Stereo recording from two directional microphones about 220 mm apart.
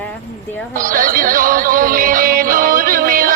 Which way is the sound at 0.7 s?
40° right (ahead or behind).